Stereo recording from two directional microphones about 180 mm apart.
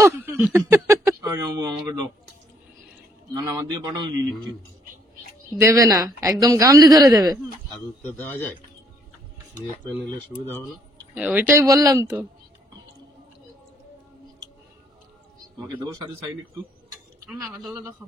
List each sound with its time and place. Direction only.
0.2 s speech: 10° right (ahead or behind)
3.8 s a woman's voice: 20° right (ahead or behind)
5.6 s a woman's voice: 15° right (ahead or behind)
8.0 s a man's voice: 10° left (ahead or behind)
11.1 s speech: 10° right (ahead or behind)
15.7 s a woman's voice: 25° right (ahead or behind)